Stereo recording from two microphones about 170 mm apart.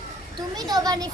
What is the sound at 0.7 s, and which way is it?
Speech, 20° right (ahead or behind).